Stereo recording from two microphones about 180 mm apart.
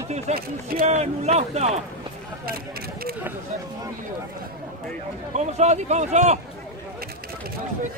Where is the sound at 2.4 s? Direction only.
55° right (ahead or behind).